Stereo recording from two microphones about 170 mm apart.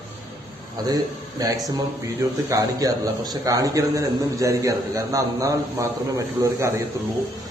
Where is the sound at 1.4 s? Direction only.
20° right (ahead or behind).